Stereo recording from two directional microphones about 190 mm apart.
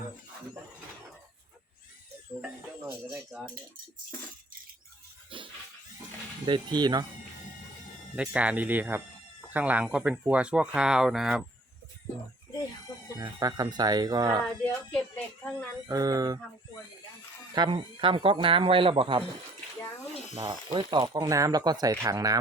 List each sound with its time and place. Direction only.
3.1 s speech: 5° right (ahead or behind)
5.3 s speech: 25° right (ahead or behind)
8.1 s speech: 5° right (ahead or behind)
13.1 s speech: 20° right (ahead or behind)
14.4 s a sound: 5° left (ahead or behind)
15.9 s speech: 20° right (ahead or behind)
17.5 s speech: 25° right (ahead or behind)
20.3 s speech: 25° right (ahead or behind)